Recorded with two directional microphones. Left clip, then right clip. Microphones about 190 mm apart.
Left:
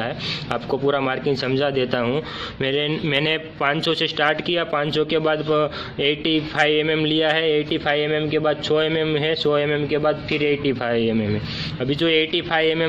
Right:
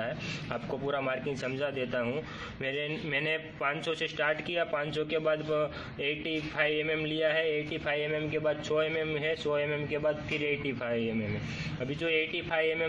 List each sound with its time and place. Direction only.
0.0 s a man's voice: 60° left (ahead or behind)